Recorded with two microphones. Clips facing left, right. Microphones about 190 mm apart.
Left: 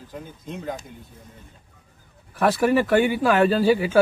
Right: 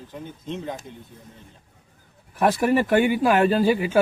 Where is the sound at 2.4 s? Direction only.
15° right (ahead or behind).